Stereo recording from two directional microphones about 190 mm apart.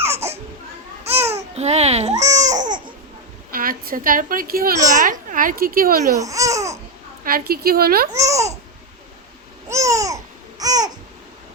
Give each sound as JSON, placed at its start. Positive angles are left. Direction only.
{"t": 0.1, "sound": "baby cry", "side_deg": -35}
{"t": 1.0, "sound": "babbling", "side_deg": -35}
{"t": 2.4, "sound": "baby cry", "side_deg": -40}
{"t": 2.6, "sound": "a sound", "side_deg": -25}
{"t": 3.5, "sound": "a woman's voice", "side_deg": -50}
{"t": 6.1, "sound": "babbling", "side_deg": -15}
{"t": 7.3, "sound": "a child's voice", "side_deg": -50}
{"t": 8.1, "sound": "babbling", "side_deg": -15}
{"t": 9.6, "sound": "babbling", "side_deg": -15}